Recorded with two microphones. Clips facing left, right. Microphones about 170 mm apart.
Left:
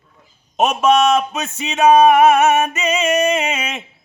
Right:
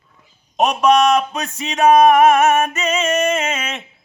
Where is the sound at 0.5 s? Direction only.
5° left (ahead or behind).